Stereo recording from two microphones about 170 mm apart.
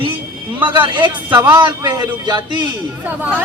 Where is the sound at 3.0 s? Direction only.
10° right (ahead or behind).